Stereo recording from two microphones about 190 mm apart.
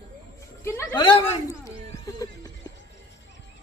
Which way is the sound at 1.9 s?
15° left (ahead or behind).